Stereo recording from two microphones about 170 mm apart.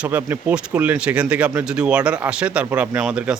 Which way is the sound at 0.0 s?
10° right (ahead or behind).